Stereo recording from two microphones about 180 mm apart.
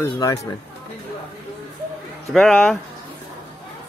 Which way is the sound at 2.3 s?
Centre (ahead or behind).